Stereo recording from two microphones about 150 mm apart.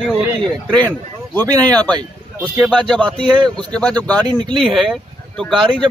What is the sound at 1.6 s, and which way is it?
Speech, 10° left (ahead or behind).